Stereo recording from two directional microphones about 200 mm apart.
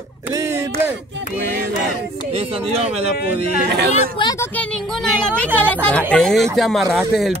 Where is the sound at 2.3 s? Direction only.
30° right (ahead or behind).